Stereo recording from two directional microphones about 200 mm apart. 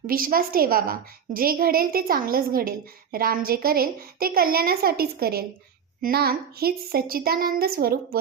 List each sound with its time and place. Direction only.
0.1 s a woman's voice: 45° right (ahead or behind)